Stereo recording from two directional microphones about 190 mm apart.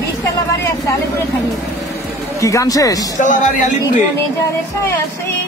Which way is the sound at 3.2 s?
40° left (ahead or behind).